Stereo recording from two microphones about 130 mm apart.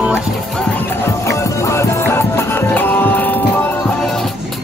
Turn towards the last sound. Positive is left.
turn(degrees=15)  # may be behind; listen again after turning